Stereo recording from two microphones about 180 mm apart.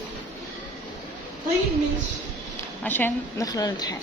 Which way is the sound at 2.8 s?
10° left (ahead or behind).